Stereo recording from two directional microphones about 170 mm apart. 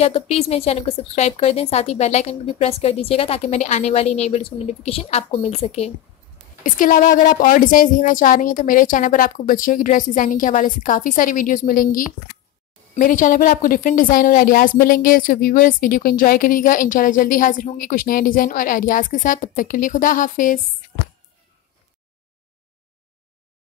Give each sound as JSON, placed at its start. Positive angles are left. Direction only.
{"t": 0.0, "sound": "a woman's voice", "side_deg": 35}
{"t": 6.6, "sound": "a woman's voice", "side_deg": 50}